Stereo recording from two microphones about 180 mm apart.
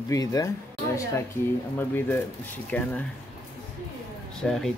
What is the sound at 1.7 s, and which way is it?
Speech, 10° left (ahead or behind).